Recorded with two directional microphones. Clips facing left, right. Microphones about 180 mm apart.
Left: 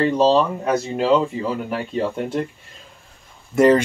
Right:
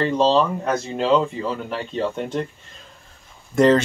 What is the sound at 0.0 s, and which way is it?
Speech, 10° left (ahead or behind).